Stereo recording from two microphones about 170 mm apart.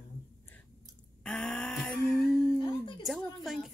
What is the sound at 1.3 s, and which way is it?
Speech, 5° left (ahead or behind).